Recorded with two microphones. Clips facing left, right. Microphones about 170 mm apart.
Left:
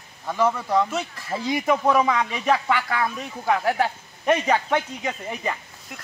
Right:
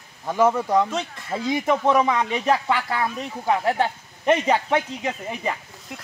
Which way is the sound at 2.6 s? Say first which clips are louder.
Even; 30° right (ahead or behind).